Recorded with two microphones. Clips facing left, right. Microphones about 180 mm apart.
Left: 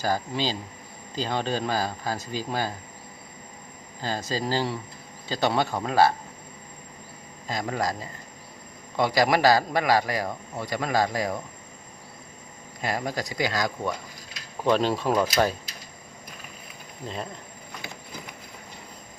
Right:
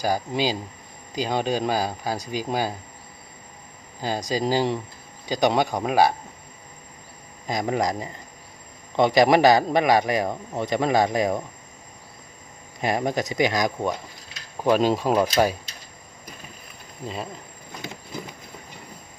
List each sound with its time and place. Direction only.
0.0 s speech: 10° right (ahead or behind)
4.0 s speech: 15° right (ahead or behind)
7.4 s speech: 15° right (ahead or behind)
12.8 s speech: 20° right (ahead or behind)